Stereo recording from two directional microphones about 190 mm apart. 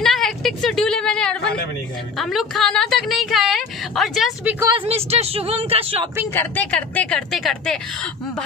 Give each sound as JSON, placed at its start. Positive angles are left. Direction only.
{"t": 0.0, "sound": "a sound", "side_deg": 0}
{"t": 4.6, "sound": "speech", "side_deg": -20}
{"t": 4.8, "sound": "speech", "side_deg": -30}
{"t": 6.3, "sound": "a woman's voice", "side_deg": 10}